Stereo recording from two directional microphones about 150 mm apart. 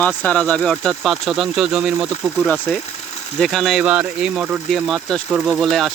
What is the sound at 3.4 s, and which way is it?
Speech, centre (ahead or behind).